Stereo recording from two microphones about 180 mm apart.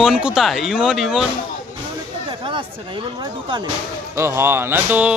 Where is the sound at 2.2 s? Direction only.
25° right (ahead or behind).